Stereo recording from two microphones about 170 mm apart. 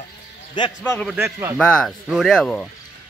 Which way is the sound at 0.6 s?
25° left (ahead or behind).